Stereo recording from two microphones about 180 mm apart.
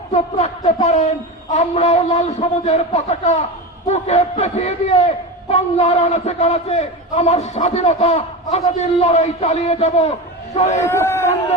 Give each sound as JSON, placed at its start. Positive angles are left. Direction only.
{"t": 0.1, "sound": "a man's voice", "side_deg": 40}
{"t": 10.8, "sound": "speech", "side_deg": 15}